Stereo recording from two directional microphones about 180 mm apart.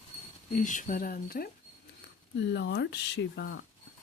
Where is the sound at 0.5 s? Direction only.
45° left (ahead or behind).